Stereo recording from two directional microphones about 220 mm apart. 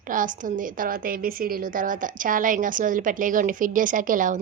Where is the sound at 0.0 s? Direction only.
35° right (ahead or behind).